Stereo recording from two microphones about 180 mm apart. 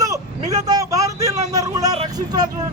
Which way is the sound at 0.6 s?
20° right (ahead or behind).